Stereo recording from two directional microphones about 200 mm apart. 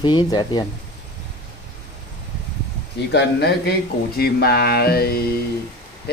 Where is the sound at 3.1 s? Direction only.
55° left (ahead or behind).